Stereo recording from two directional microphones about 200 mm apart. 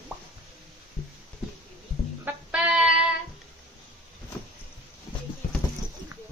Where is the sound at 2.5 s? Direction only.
5° right (ahead or behind).